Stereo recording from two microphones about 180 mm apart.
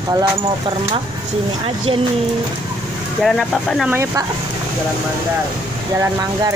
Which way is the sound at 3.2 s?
Centre (ahead or behind).